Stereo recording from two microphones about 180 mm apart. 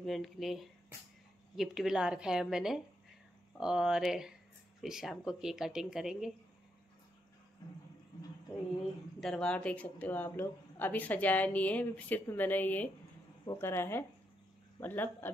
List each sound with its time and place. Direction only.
0.0 s speech: centre (ahead or behind)
9.2 s speech: 5° left (ahead or behind)